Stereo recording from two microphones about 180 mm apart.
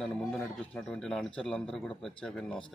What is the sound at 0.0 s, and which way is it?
A man's voice, 5° left (ahead or behind).